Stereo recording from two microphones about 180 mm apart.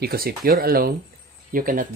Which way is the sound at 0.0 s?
60° right (ahead or behind).